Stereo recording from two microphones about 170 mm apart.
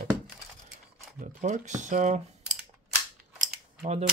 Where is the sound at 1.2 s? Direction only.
45° right (ahead or behind).